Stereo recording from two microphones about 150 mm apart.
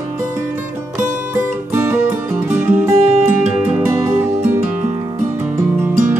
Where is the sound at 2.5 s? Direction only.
15° right (ahead or behind).